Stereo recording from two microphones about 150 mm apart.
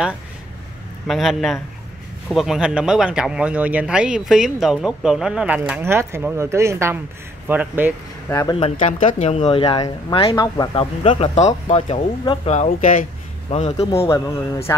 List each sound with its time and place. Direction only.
1.0 s speech: centre (ahead or behind)
5.6 s speech: 15° right (ahead or behind)
8.3 s speech: 20° left (ahead or behind)
8.5 s speech: 40° left (ahead or behind)
9.8 s speech: 30° left (ahead or behind); by 13.0 s 55° left (ahead or behind)
13.5 s speech: 45° left (ahead or behind)
14.7 s speech: 25° left (ahead or behind)